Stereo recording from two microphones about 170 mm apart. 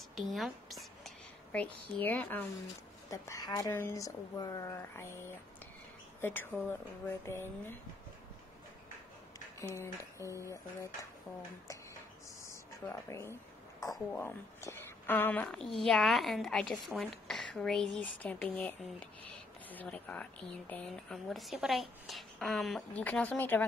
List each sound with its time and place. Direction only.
0.1 s a woman's voice: centre (ahead or behind)
3.1 s a woman's voice: 20° left (ahead or behind)
9.8 s a woman's voice: 15° left (ahead or behind)
12.8 s a woman's voice: 15° left (ahead or behind)